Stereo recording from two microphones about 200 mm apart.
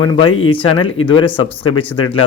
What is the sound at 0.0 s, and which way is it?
Speech, 20° left (ahead or behind).